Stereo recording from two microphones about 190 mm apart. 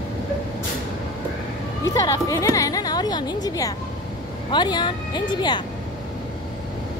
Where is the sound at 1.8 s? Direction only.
20° left (ahead or behind).